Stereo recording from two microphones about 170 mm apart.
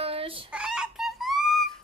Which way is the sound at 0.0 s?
35° right (ahead or behind).